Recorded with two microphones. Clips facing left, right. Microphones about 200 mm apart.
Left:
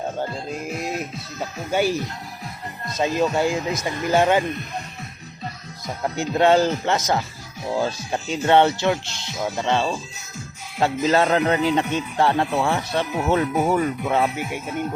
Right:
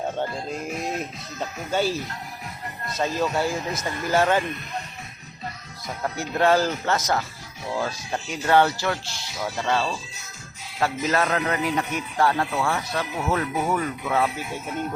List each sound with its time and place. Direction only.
1.4 s speech: 15° left (ahead or behind)
6.0 s a man's voice: 20° left (ahead or behind)